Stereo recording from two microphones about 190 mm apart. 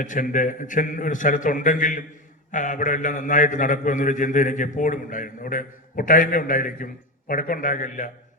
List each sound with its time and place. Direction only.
0.0 s a man's voice: 45° left (ahead or behind)